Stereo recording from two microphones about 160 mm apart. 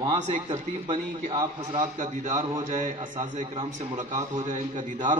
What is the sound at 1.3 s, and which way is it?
Speech, 25° right (ahead or behind).